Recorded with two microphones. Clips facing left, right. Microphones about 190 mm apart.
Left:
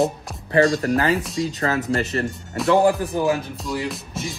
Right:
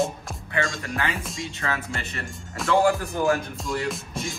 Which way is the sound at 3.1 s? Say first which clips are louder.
Left 2 dB; 5° left (ahead or behind).